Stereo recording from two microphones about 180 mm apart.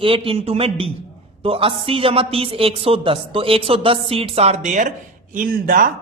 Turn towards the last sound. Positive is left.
turn(degrees=-50)  # may be behind; listen again after turning